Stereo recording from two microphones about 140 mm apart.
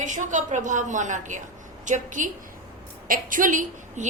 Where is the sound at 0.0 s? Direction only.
60° right (ahead or behind).